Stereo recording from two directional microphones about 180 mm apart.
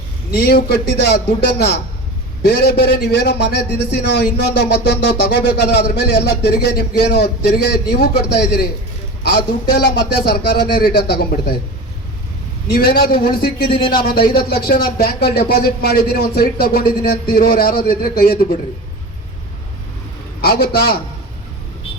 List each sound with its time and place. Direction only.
0.3 s a man's voice: 60° left (ahead or behind)
9.7 s speech: 70° left (ahead or behind)
12.7 s speech: 55° left (ahead or behind)
20.4 s speech: 60° left (ahead or behind)